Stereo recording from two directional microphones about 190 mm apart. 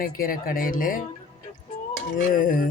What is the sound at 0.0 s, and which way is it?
Speech, 50° left (ahead or behind).